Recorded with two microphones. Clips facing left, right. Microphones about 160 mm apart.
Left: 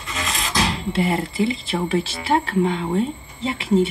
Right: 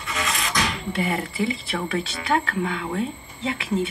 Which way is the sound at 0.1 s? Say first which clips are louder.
Left 1 dB; 30° left (ahead or behind).